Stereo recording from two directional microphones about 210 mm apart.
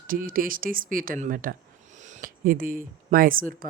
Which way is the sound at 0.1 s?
40° right (ahead or behind).